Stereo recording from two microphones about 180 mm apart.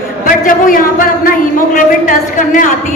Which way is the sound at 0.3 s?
50° left (ahead or behind).